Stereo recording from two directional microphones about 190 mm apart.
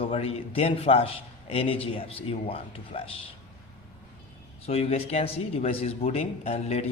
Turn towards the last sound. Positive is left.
turn(degrees=30)  # may be behind; listen again after turning